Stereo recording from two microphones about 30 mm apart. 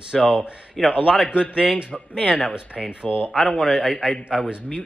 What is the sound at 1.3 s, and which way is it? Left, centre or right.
Speech, right.